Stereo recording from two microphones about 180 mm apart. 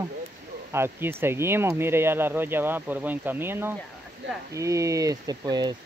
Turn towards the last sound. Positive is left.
turn(degrees=-20)  # may be behind; listen again after turning